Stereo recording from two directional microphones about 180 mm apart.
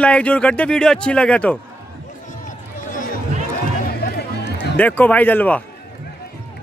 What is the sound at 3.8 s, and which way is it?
Music, 65° left (ahead or behind).